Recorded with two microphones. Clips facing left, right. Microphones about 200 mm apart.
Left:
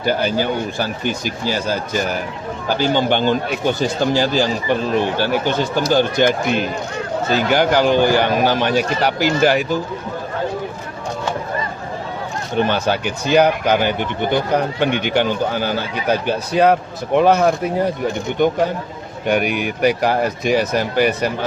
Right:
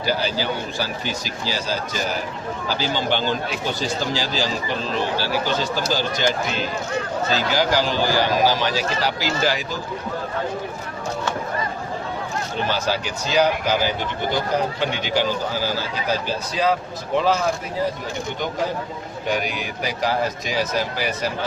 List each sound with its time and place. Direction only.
0.0 s speech: 55° left (ahead or behind)
12.5 s speech: 60° left (ahead or behind)
19.3 s speech: 60° left (ahead or behind)